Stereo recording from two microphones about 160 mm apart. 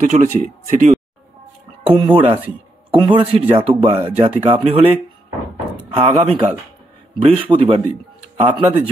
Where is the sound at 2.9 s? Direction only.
30° right (ahead or behind).